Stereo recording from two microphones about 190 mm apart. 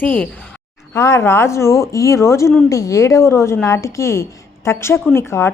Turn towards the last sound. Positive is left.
turn(degrees=15)  # may be behind; listen again after turning